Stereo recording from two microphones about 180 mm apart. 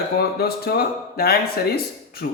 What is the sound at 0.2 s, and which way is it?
Speech, 60° left (ahead or behind).